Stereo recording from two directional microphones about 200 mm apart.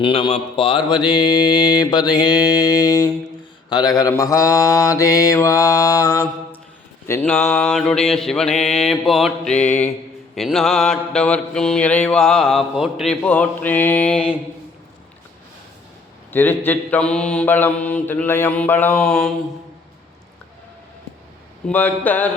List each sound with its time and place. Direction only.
0.0 s mantra: 25° left (ahead or behind); by 14.3 s 5° left (ahead or behind)
16.3 s mantra: 10° left (ahead or behind)
21.7 s mantra: 10° left (ahead or behind)